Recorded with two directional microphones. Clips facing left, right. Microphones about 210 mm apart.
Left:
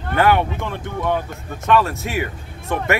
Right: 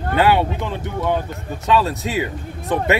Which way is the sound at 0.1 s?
15° right (ahead or behind).